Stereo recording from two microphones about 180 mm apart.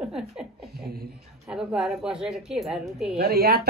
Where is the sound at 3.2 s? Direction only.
60° right (ahead or behind).